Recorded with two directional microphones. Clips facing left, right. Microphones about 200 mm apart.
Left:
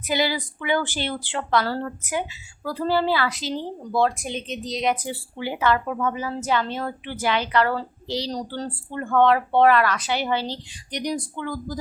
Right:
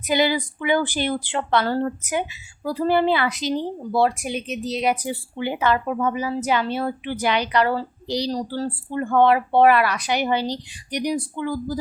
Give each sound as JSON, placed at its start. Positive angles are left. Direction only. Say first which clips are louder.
{"t": 0.1, "sound": "speech", "louder": "right 4 dB", "side_deg": -20}
{"t": 5.0, "sound": "speech", "louder": "right 3 dB", "side_deg": -20}